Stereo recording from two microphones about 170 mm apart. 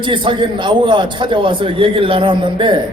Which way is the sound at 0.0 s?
30° right (ahead or behind).